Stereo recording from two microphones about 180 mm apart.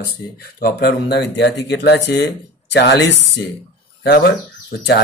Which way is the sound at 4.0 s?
65° left (ahead or behind).